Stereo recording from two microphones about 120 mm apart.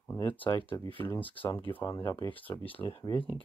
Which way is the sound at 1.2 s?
45° left (ahead or behind).